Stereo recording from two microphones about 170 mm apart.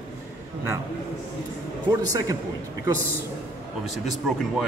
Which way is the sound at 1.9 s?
20° right (ahead or behind).